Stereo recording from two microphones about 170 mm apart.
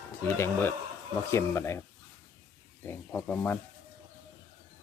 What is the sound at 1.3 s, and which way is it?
Speech, 15° left (ahead or behind).